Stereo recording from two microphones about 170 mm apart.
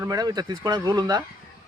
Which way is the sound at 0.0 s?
20° right (ahead or behind).